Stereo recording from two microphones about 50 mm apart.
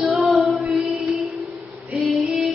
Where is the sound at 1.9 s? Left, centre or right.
Centre.